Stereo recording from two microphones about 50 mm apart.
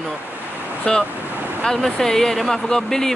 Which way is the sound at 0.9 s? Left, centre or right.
Centre.